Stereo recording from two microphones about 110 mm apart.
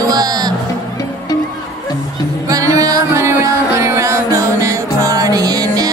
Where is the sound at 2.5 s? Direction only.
30° right (ahead or behind).